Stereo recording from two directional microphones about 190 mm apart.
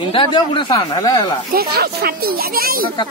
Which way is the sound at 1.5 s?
55° right (ahead or behind).